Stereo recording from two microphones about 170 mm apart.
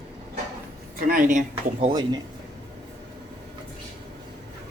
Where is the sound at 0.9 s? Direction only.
55° right (ahead or behind).